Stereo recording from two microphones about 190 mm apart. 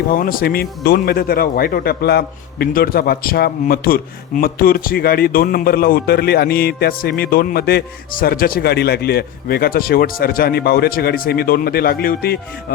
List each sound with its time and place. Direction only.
0.1 s speech: 50° left (ahead or behind)